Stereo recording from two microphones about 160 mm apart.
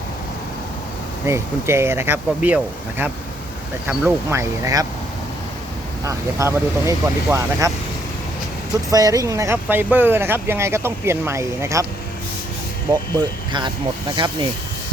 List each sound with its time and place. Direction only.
1.3 s speech: 15° right (ahead or behind)
3.8 s speech: 15° right (ahead or behind)
6.1 s speech: 20° right (ahead or behind)
8.9 s speech: 20° right (ahead or behind)
14.2 s speech: 30° right (ahead or behind)